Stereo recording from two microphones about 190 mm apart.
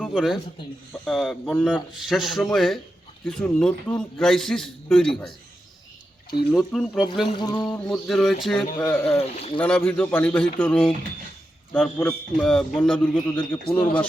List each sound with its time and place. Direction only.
0.0 s a sound: centre (ahead or behind)
1.0 s a man's voice: centre (ahead or behind)
6.5 s a man's voice: 5° left (ahead or behind)
7.3 s speech: 25° left (ahead or behind)
7.7 s a man's voice: centre (ahead or behind)
9.1 s speech: 30° left (ahead or behind)
9.6 s a man's voice: 5° left (ahead or behind)